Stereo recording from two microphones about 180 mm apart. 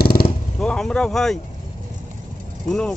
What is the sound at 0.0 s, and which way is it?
Vehicle, 55° left (ahead or behind).